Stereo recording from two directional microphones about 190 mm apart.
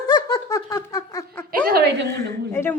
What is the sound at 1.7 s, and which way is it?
Speech, 60° right (ahead or behind).